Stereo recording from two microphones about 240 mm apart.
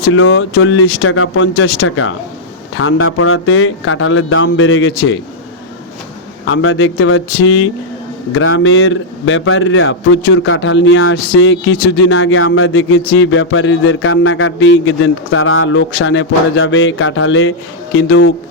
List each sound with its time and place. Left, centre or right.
0.0 s speech: left
6.5 s speech: left